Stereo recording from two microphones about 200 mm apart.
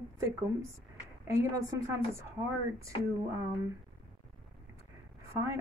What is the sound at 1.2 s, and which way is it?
Speech, 20° right (ahead or behind).